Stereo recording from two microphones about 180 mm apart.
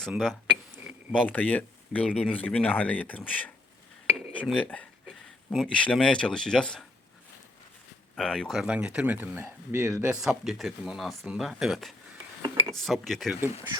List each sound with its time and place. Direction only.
0.0 s speech: centre (ahead or behind)
2.0 s speech: centre (ahead or behind)
2.3 s speech: 10° left (ahead or behind)
8.1 s speech: 5° left (ahead or behind)
12.4 s a sound: 25° right (ahead or behind)
12.7 s speech: centre (ahead or behind)